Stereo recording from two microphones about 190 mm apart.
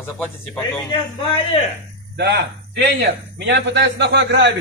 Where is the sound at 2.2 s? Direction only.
60° right (ahead or behind).